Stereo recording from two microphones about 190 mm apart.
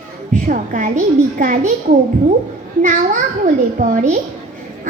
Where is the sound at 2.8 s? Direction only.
40° right (ahead or behind).